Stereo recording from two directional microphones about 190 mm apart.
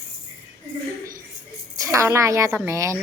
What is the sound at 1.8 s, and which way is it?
A woman's voice, 15° right (ahead or behind).